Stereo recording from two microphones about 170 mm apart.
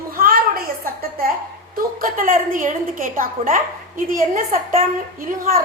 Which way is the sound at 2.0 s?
55° right (ahead or behind).